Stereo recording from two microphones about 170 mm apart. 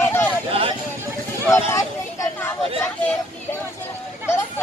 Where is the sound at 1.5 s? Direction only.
15° left (ahead or behind).